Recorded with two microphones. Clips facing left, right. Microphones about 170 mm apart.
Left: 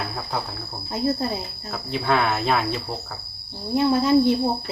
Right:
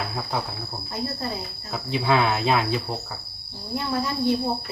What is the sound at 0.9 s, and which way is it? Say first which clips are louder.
Speech: left 7 dB; 20° left (ahead or behind).